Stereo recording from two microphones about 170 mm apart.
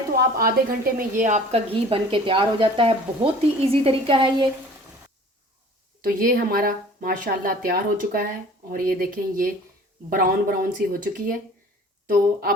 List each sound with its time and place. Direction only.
0.1 s a woman's voice: 65° right (ahead or behind)
0.9 s a woman's voice: 50° right (ahead or behind); by 4.4 s 30° right (ahead or behind)
6.0 s speech: 60° right (ahead or behind)